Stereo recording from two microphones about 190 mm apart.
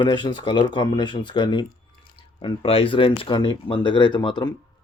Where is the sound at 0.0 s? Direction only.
25° left (ahead or behind).